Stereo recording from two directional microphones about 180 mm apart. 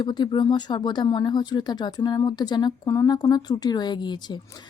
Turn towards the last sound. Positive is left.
turn(degrees=25)  # may be behind; listen again after turning